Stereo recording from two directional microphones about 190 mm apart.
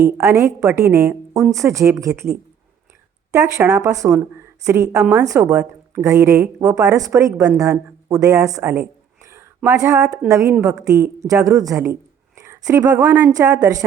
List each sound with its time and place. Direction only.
0.0 s a woman's voice: 10° right (ahead or behind)
3.3 s a woman's voice: 10° right (ahead or behind)